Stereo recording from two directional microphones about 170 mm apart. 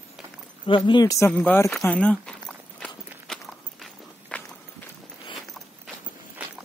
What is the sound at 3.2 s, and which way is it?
Walk, centre (ahead or behind).